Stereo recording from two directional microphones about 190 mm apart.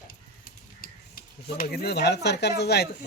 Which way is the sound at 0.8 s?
50° left (ahead or behind).